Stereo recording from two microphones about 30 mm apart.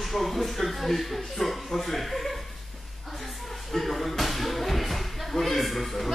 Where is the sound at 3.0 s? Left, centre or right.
Centre.